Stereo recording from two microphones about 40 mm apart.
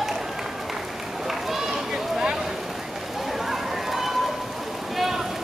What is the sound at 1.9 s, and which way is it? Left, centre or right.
Vehicle, centre.